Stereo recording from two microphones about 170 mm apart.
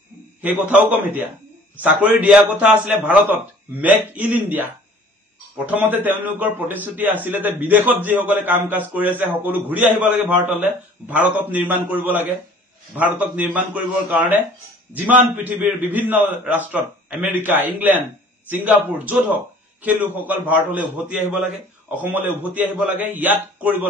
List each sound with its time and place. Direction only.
0.4 s a man's voice: 10° right (ahead or behind)
5.7 s a man's voice: 10° right (ahead or behind)